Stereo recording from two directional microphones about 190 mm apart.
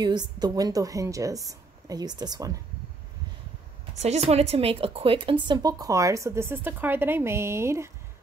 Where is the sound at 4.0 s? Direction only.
35° right (ahead or behind).